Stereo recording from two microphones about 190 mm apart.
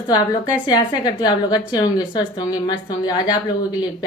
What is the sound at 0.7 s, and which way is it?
A woman's voice, 20° left (ahead or behind).